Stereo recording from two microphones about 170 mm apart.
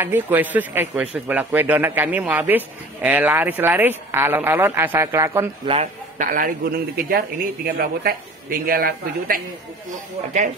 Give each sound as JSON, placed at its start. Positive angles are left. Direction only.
{"t": 0.0, "sound": "speech", "side_deg": -10}
{"t": 6.1, "sound": "a man's voice", "side_deg": -55}
{"t": 9.8, "sound": "speech", "side_deg": -45}